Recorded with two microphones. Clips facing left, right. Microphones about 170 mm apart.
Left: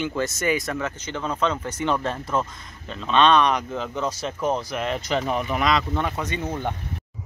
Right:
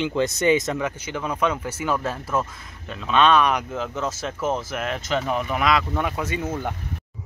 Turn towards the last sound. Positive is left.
turn(degrees=-5)  # may be behind; listen again after turning